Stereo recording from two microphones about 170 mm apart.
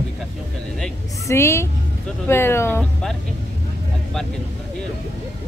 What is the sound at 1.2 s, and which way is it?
Speech, 15° left (ahead or behind).